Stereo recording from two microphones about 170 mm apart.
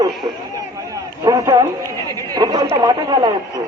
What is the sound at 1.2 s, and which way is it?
Speech, 20° right (ahead or behind).